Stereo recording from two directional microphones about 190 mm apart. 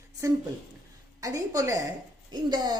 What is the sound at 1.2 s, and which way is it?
A woman's voice, 20° right (ahead or behind).